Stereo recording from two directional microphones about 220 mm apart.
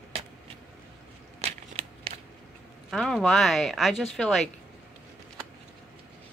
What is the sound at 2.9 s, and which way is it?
Speech, centre (ahead or behind).